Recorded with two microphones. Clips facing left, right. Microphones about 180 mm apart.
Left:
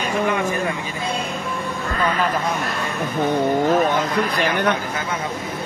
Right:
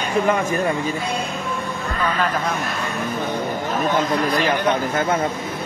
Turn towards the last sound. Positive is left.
turn(degrees=60)  # may be behind; listen again after turning